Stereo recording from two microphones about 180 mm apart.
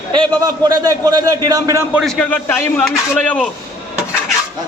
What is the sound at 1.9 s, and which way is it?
A man's voice, centre (ahead or behind).